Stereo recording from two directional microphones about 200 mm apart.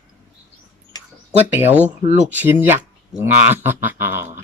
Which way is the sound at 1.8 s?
35° right (ahead or behind).